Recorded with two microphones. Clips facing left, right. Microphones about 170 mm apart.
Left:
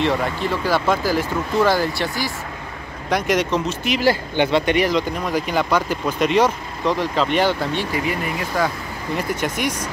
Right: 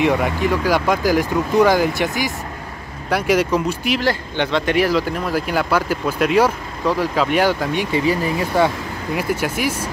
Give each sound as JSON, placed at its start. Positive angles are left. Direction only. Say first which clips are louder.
{"t": 0.0, "sound": "speech", "louder": "right 3 dB", "side_deg": -10}
{"t": 4.0, "sound": "speech", "louder": "left 2 dB", "side_deg": 5}
{"t": 7.9, "sound": "speech", "louder": "right 5 dB", "side_deg": -25}
{"t": 9.1, "sound": "speech", "louder": "right 2 dB", "side_deg": -5}